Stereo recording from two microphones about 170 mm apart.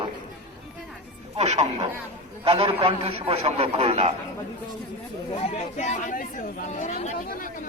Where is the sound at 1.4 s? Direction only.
40° right (ahead or behind).